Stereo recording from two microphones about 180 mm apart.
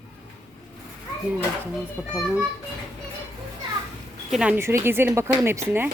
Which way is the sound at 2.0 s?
5° right (ahead or behind).